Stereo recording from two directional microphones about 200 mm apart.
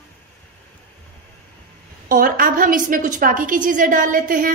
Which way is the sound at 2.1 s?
45° right (ahead or behind).